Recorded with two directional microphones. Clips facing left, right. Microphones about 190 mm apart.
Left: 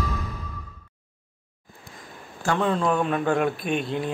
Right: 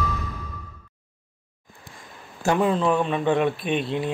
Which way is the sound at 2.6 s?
5° right (ahead or behind).